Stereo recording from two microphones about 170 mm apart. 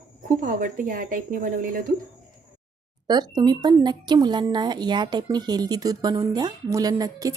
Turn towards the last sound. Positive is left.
turn(degrees=-20)  # may be behind; listen again after turning